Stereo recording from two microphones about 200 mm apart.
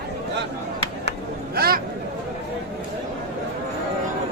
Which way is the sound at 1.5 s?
50° right (ahead or behind).